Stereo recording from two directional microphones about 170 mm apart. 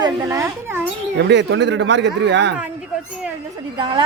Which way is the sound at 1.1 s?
90° right.